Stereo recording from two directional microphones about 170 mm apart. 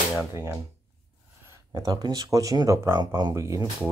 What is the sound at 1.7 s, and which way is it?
Speech, 20° right (ahead or behind).